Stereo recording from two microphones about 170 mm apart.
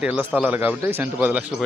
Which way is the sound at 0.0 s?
5° right (ahead or behind).